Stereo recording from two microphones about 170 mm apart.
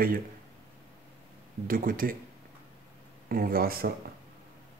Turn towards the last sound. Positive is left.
turn(degrees=-60)  # may be behind; listen again after turning